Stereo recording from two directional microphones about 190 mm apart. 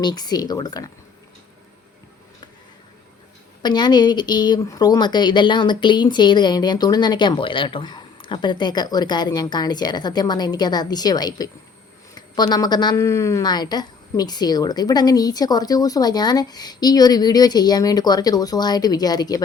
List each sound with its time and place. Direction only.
0.0 s a woman's voice: 20° left (ahead or behind)
3.6 s a woman's voice: 20° left (ahead or behind)